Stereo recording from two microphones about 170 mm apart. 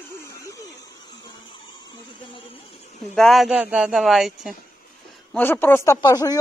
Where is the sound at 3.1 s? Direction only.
Centre (ahead or behind).